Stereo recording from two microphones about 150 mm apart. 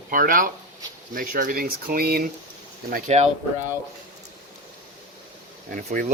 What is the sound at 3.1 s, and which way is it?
Speech, 45° right (ahead or behind).